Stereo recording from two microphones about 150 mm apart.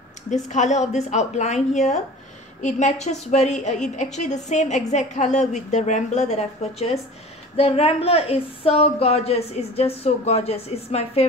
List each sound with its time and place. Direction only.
0.3 s speech: 55° left (ahead or behind)